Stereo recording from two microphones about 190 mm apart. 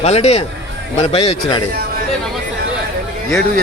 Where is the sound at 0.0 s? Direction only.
35° left (ahead or behind).